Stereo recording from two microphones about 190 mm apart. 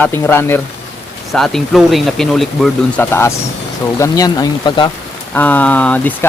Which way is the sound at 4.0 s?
20° left (ahead or behind).